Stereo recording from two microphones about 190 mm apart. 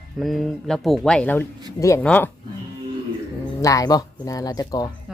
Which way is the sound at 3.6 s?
20° left (ahead or behind).